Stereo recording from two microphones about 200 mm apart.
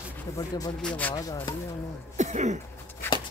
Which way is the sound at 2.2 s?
35° right (ahead or behind).